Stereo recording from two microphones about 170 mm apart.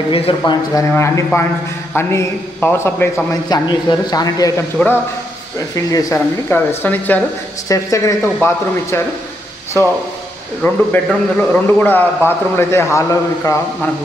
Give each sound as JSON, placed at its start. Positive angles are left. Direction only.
{"t": 0.1, "sound": "a man's voice", "side_deg": 30}
{"t": 3.4, "sound": "speech", "side_deg": 25}
{"t": 5.9, "sound": "a man's voice", "side_deg": 20}
{"t": 9.8, "sound": "a man's voice", "side_deg": 15}